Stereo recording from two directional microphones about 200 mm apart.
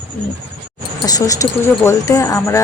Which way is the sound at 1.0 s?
20° left (ahead or behind).